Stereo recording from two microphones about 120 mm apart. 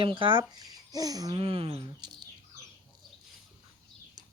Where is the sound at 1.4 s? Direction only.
50° right (ahead or behind).